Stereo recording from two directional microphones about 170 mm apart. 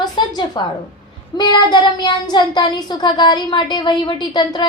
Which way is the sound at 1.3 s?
25° left (ahead or behind).